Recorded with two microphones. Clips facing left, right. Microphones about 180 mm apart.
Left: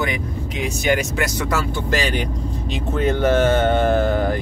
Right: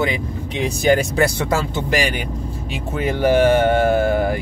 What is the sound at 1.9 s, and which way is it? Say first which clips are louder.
Speech: even; 10° right (ahead or behind).